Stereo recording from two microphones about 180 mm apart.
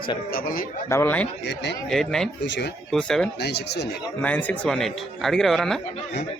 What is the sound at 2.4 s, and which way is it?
Speech, 75° left (ahead or behind).